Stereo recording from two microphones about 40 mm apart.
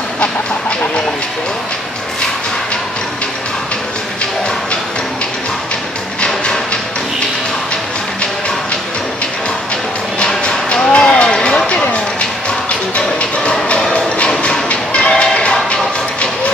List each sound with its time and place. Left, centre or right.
0.2 s chicken: left
6.2 s music: centre
10.1 s a sound: left
10.9 s music: left
14.3 s a sound: left
14.7 s music: left